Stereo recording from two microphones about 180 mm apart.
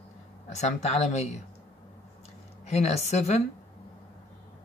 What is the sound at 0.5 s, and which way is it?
Speech, 40° left (ahead or behind).